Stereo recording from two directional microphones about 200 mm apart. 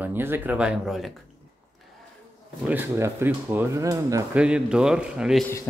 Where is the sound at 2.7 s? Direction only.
10° right (ahead or behind).